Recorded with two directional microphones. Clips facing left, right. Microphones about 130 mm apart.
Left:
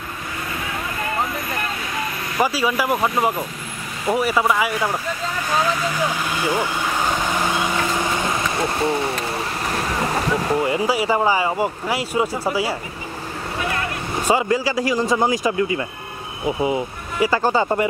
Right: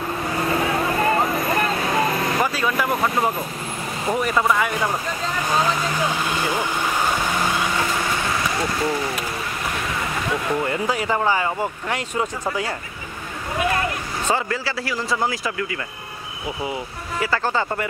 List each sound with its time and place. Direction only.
0.4 s vehicle: 40° right (ahead or behind)
2.4 s speech: 10° left (ahead or behind)
6.4 s speech: 10° left (ahead or behind)
8.2 s a sound: 25° left (ahead or behind)
9.8 s vehicle: 35° left (ahead or behind)
10.7 s speech: 10° left (ahead or behind)
14.2 s speech: 15° left (ahead or behind)